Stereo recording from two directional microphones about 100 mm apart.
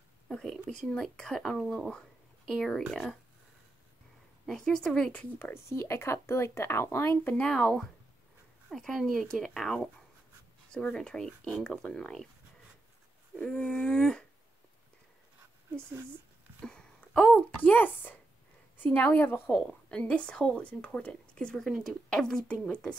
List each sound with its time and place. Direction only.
0.3 s speech: 5° left (ahead or behind)
4.5 s a woman's voice: 5° left (ahead or behind)
5.4 s speech: 25° left (ahead or behind)
7.3 s a woman's voice: 10° left (ahead or behind)
13.4 s a woman's voice: 10° left (ahead or behind)
16.6 s a sound: 10° left (ahead or behind)
17.6 s a woman's voice: 15° left (ahead or behind)
19.6 s a woman's voice: 10° left (ahead or behind)